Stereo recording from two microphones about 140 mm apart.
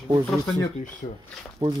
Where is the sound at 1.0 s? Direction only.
50° left (ahead or behind).